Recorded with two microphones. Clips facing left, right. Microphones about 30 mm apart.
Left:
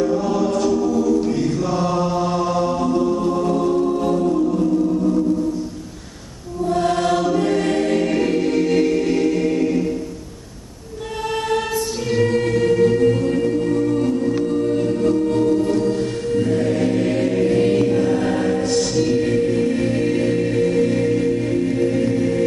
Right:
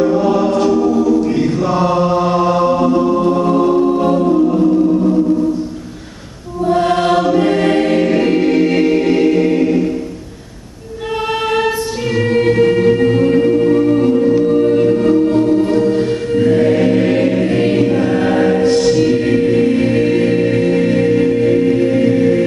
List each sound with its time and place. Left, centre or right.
0.0 s choir: right
6.6 s choir: right
12.2 s music: right